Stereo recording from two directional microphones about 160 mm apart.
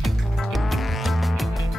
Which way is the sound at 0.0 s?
Centre (ahead or behind).